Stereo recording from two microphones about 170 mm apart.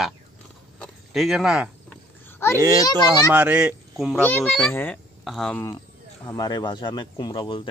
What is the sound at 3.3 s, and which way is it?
Speech, 5° right (ahead or behind).